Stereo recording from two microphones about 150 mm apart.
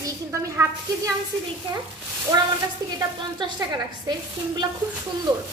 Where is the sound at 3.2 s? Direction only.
30° right (ahead or behind).